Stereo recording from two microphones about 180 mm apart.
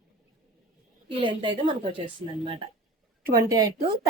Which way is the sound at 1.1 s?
25° right (ahead or behind).